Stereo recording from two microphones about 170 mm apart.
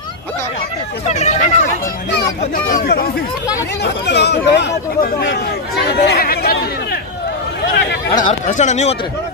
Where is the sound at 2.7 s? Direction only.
60° left (ahead or behind).